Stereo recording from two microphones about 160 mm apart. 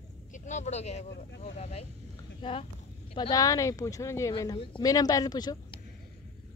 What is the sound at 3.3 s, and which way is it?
Speech, 20° left (ahead or behind).